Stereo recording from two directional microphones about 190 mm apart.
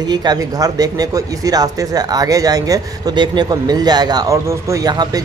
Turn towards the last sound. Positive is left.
turn(degrees=-20)  # may be behind; listen again after turning